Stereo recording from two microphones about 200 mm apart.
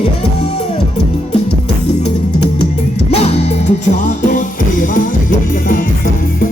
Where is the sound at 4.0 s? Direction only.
40° left (ahead or behind).